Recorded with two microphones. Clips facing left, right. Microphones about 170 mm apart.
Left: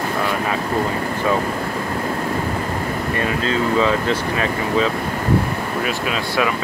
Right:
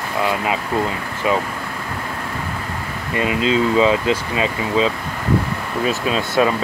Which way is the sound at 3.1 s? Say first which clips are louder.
Right 5 dB; 20° right (ahead or behind).